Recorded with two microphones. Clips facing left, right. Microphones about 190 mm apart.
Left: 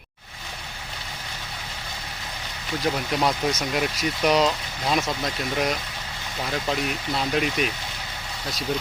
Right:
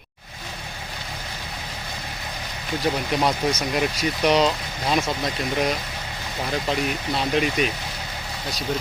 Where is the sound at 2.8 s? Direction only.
Centre (ahead or behind).